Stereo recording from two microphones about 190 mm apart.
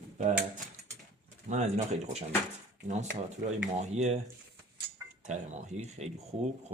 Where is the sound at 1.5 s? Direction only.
40° right (ahead or behind).